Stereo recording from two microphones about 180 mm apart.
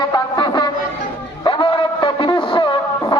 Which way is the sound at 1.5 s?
30° left (ahead or behind).